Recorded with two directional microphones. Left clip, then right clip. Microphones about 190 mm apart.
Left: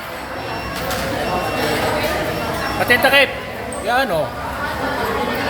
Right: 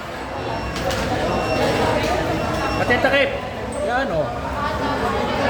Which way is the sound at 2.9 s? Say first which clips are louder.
Left 5 dB; 20° left (ahead or behind).